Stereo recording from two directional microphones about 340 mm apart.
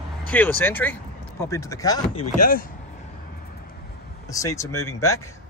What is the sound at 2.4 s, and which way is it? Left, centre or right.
Speech, left.